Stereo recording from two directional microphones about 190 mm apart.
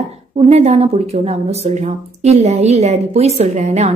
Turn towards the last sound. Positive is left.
turn(degrees=-35)  # may be behind; listen again after turning